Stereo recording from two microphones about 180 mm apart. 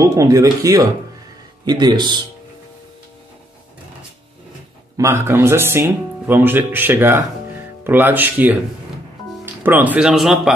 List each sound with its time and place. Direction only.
0.0 s speech: 20° right (ahead or behind)
4.9 s speech: 15° right (ahead or behind)
9.6 s speech: 10° right (ahead or behind)